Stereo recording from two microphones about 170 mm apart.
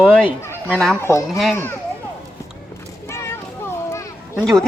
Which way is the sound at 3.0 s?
15° left (ahead or behind).